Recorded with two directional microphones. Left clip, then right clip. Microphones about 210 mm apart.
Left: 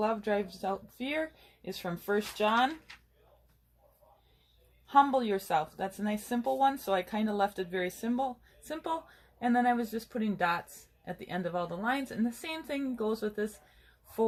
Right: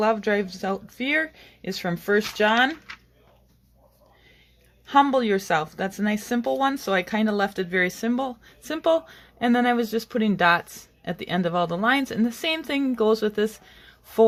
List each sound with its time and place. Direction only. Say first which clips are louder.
0.0 s speech: right 8 dB; 40° right (ahead or behind)
4.9 s speech: right 6 dB; 40° right (ahead or behind)